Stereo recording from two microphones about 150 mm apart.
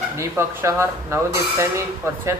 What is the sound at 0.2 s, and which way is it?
Speech, 20° right (ahead or behind).